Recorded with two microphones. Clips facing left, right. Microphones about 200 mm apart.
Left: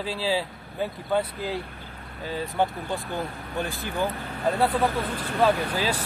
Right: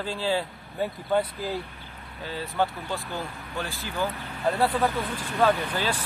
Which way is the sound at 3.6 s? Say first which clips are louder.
Left 3 dB; 55° left (ahead or behind).